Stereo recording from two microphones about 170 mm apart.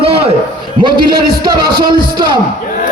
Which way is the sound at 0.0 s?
35° right (ahead or behind).